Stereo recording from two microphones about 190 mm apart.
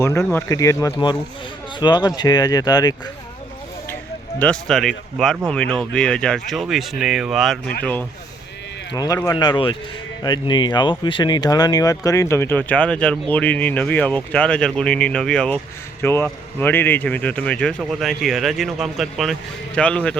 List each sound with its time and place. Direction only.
0.0 s speech: 15° left (ahead or behind)
4.4 s speech: 5° left (ahead or behind)
8.9 s speech: 20° left (ahead or behind)